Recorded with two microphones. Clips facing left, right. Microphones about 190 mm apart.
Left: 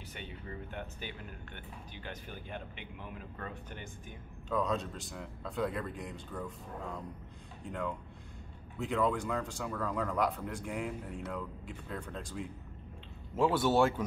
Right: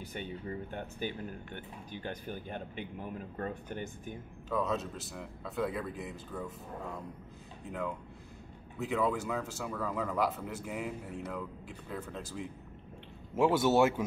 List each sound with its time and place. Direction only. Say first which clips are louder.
0.7 s speech: right 5 dB; 45° right (ahead or behind)
4.5 s speech: even; 5° right (ahead or behind)
7.6 s speech: even; 5° right (ahead or behind)